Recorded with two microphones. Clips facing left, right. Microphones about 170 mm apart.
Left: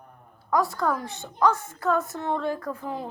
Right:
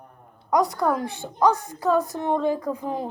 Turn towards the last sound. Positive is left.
turn(degrees=-20)  # may be behind; listen again after turning